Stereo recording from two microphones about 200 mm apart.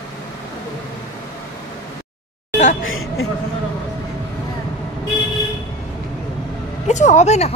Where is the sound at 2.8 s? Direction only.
90° left.